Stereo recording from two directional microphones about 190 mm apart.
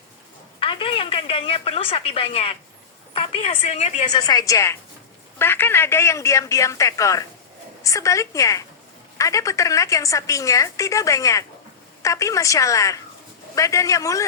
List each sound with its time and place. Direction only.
0.6 s a woman's voice: 25° left (ahead or behind)
4.1 s a woman's voice: 20° left (ahead or behind)